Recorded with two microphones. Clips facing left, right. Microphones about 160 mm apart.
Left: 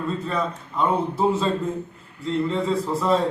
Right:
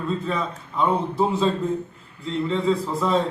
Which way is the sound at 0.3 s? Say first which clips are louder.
Left 1 dB; centre (ahead or behind).